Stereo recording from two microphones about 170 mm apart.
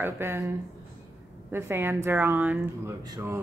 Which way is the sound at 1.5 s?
15° right (ahead or behind).